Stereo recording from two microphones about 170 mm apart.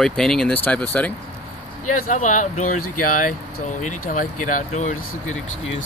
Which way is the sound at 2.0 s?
45° left (ahead or behind).